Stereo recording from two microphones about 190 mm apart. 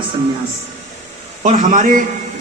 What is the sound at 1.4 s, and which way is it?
Speech, 45° right (ahead or behind).